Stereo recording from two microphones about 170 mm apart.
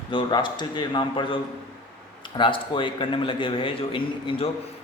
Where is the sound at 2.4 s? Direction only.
30° left (ahead or behind).